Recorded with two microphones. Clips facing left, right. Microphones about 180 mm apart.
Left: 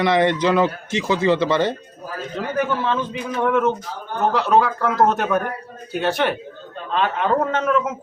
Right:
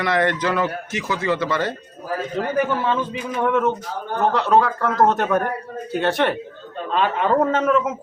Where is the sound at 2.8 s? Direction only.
5° right (ahead or behind).